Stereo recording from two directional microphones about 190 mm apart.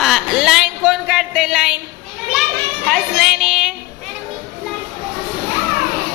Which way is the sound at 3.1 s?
Centre (ahead or behind).